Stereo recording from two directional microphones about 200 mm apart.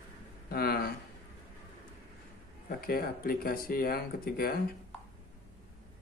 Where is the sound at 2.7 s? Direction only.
50° left (ahead or behind).